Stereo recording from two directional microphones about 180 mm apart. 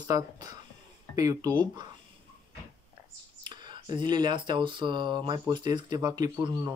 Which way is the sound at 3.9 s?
25° right (ahead or behind).